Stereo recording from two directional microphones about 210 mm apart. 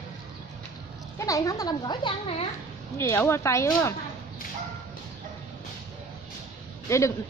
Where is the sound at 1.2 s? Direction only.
15° left (ahead or behind).